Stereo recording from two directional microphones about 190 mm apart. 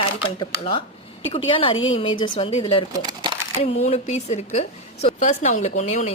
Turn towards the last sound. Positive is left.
turn(degrees=35)  # may be behind; listen again after turning